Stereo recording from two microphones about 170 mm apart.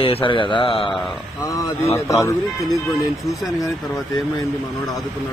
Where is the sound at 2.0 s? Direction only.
20° left (ahead or behind).